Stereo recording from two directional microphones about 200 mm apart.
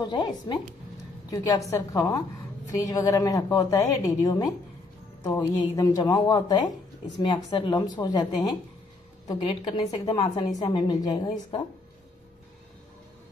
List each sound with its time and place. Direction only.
0.0 s a woman's voice: 20° left (ahead or behind)